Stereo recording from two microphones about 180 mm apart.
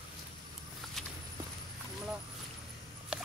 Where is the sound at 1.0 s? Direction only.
Centre (ahead or behind).